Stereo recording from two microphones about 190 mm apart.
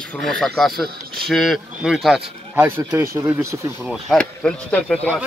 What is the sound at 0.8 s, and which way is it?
Speech, 55° right (ahead or behind).